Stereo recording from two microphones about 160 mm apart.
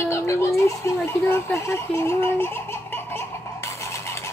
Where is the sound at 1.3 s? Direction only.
15° left (ahead or behind).